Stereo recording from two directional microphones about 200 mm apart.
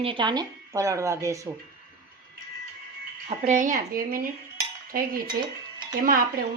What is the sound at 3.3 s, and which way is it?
A woman's voice, 40° right (ahead or behind).